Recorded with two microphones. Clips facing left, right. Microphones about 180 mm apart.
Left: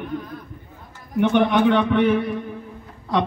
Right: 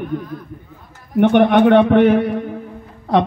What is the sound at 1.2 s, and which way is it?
A man's voice, 60° right (ahead or behind).